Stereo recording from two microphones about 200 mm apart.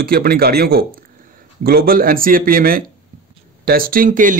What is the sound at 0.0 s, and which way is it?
Speech, 50° right (ahead or behind).